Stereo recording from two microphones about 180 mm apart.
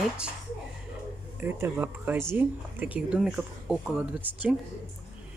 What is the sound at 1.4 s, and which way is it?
Speech, 10° right (ahead or behind).